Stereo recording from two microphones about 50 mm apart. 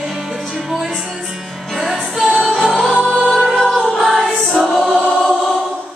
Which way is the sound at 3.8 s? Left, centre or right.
Centre.